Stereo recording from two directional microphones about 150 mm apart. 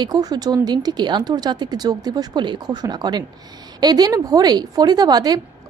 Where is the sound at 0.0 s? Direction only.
25° right (ahead or behind).